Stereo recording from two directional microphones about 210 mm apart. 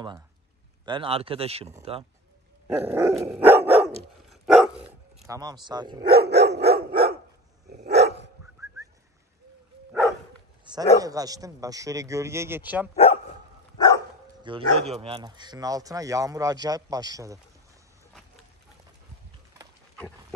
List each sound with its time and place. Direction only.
0.8 s speech: 25° right (ahead or behind)
2.8 s speech: 10° right (ahead or behind)
3.3 s dog: 10° right (ahead or behind)
5.3 s speech: 20° right (ahead or behind)
6.0 s dog: 50° right (ahead or behind)
10.6 s dog: 20° right (ahead or behind)
11.0 s speech: 15° right (ahead or behind)
12.9 s dog: 30° left (ahead or behind)
13.7 s dog: 15° left (ahead or behind)
14.4 s speech: 25° right (ahead or behind)